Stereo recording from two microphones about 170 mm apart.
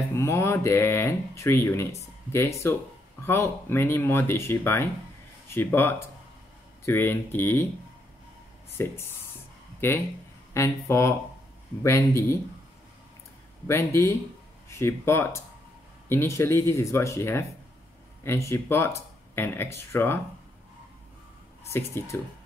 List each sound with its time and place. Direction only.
0.1 s speech: 15° left (ahead or behind)
8.7 s speech: 15° left (ahead or behind)
13.7 s speech: 15° left (ahead or behind)
21.6 s speech: 15° left (ahead or behind)